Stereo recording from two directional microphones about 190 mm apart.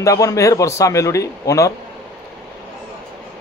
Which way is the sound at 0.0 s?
15° left (ahead or behind).